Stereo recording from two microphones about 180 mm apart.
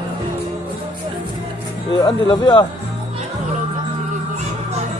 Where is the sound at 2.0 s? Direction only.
25° left (ahead or behind).